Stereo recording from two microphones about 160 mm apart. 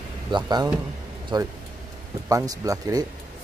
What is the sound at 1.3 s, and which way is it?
Speech, 30° right (ahead or behind).